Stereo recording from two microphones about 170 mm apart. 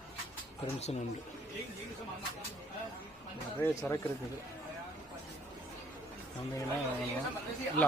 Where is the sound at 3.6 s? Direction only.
15° left (ahead or behind).